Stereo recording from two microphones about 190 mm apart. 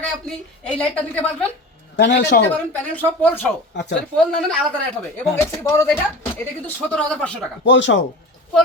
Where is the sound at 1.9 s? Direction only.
65° left (ahead or behind).